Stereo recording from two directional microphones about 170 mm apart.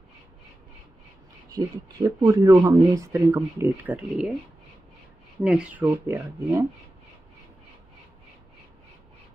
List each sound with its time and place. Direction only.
1.5 s speech: 20° right (ahead or behind)
5.4 s speech: 5° right (ahead or behind)